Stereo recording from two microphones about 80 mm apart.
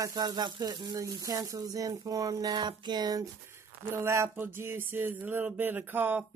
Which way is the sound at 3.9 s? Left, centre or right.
Right.